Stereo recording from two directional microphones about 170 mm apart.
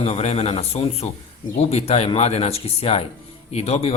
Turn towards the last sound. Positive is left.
turn(degrees=35)  # may be behind; listen again after turning